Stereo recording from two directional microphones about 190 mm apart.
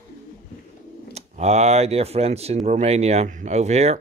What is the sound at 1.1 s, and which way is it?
Speech, 35° right (ahead or behind).